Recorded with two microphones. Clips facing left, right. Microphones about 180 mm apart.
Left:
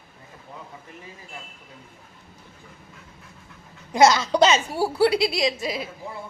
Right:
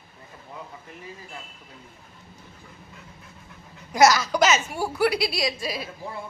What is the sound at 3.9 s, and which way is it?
A woman's voice, 25° left (ahead or behind).